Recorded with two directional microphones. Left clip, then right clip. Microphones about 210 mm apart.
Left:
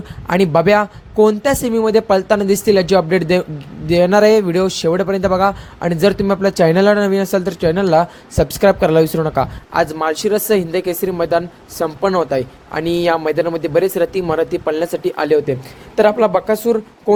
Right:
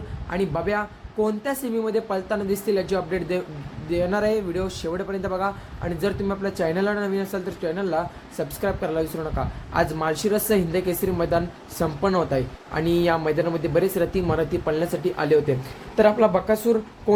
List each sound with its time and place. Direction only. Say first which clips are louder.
0.3 s speech: left 13 dB; 45° left (ahead or behind)